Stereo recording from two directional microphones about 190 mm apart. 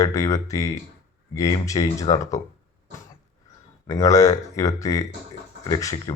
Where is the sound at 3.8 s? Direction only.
15° left (ahead or behind).